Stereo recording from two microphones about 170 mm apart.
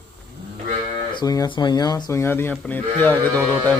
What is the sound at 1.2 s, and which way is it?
Speech, 20° left (ahead or behind).